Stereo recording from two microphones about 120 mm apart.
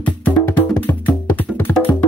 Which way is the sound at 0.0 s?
15° left (ahead or behind).